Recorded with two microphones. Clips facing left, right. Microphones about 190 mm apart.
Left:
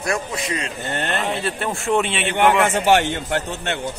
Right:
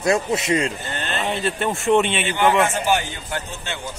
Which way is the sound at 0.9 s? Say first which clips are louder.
Left 4 dB; 65° left (ahead or behind).